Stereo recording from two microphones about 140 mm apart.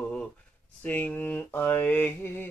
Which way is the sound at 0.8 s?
10° left (ahead or behind).